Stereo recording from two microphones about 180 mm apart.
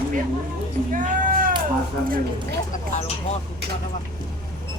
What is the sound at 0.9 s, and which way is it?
Cat, 50° right (ahead or behind).